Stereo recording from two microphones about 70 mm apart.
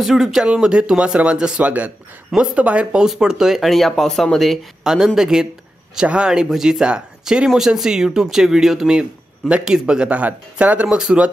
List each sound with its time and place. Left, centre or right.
0.0 s speech: centre
4.8 s speech: centre
11.0 s speech: centre